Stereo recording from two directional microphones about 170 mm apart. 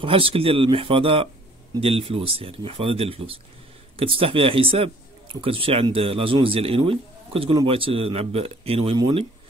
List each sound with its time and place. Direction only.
0.0 s speech: 30° right (ahead or behind)